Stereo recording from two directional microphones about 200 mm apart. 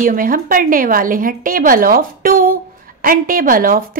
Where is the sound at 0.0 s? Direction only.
45° right (ahead or behind).